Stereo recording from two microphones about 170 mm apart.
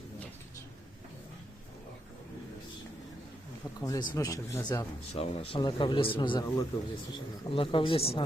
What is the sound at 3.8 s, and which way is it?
Speech, 25° left (ahead or behind).